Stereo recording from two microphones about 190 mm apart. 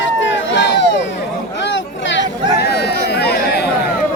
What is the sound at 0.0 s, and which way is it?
Run, 75° left (ahead or behind).